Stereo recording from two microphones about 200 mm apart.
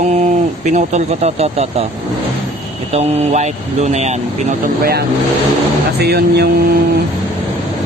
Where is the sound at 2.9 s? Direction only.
35° right (ahead or behind).